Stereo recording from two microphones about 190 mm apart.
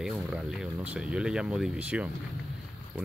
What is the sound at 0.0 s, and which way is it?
Speech, centre (ahead or behind).